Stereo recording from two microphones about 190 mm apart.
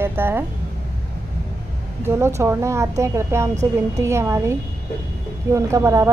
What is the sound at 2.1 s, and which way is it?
A woman's voice, 15° right (ahead or behind).